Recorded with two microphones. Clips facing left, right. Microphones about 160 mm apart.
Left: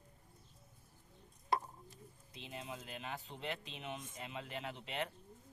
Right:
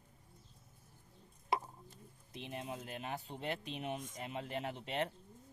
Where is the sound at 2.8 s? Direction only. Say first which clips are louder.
Right 3 dB; 45° right (ahead or behind).